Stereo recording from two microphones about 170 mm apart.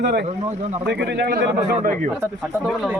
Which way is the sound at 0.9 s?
85° right.